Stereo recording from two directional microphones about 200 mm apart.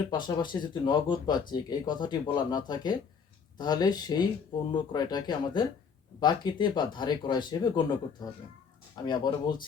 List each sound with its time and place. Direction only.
0.1 s speech: 20° left (ahead or behind)